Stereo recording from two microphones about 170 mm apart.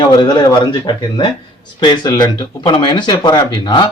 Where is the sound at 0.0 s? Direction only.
25° left (ahead or behind).